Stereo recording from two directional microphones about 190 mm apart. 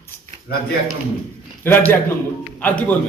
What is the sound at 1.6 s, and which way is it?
A man's voice, 10° left (ahead or behind).